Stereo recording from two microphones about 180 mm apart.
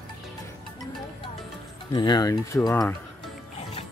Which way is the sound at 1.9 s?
25° left (ahead or behind).